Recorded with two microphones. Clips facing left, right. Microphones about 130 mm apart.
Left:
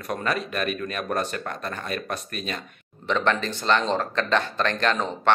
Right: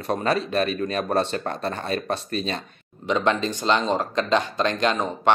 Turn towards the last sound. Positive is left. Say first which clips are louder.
# right 2 dB
turn(degrees=-15)  # may be behind; listen again after turning